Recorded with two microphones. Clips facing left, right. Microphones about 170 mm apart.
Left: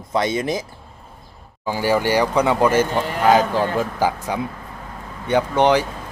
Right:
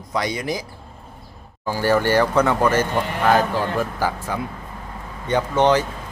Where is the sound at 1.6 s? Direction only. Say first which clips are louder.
Even; 15° left (ahead or behind).